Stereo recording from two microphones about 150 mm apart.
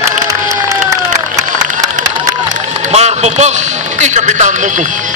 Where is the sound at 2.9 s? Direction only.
45° right (ahead or behind).